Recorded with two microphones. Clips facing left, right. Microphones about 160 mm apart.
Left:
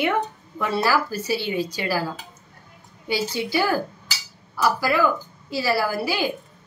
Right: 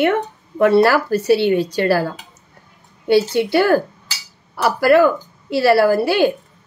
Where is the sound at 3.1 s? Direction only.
65° right (ahead or behind).